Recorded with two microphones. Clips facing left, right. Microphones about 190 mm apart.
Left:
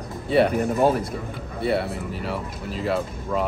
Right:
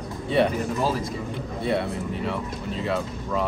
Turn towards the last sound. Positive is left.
turn(degrees=5)  # may be behind; listen again after turning